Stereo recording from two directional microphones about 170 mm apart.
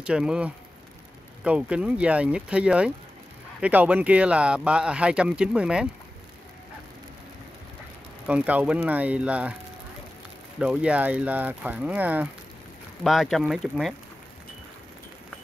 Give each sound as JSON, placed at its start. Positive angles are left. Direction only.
{"t": 0.0, "sound": "speech", "side_deg": -5}
{"t": 8.3, "sound": "speech", "side_deg": -10}
{"t": 10.6, "sound": "speech", "side_deg": -5}